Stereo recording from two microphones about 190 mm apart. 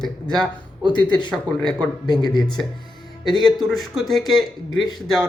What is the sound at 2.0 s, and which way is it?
Speech, 20° left (ahead or behind).